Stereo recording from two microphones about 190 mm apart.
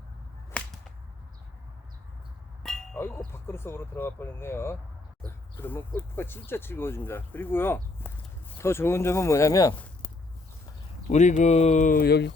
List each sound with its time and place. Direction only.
0.6 s whip: 5° left (ahead or behind)
2.6 s clang: 5° left (ahead or behind)
3.3 s speech: 10° left (ahead or behind)
11.1 s speech: 40° left (ahead or behind); by 12.3 s 60° left (ahead or behind)